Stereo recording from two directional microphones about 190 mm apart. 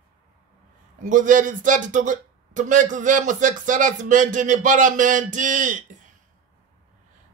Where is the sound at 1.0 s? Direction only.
40° right (ahead or behind).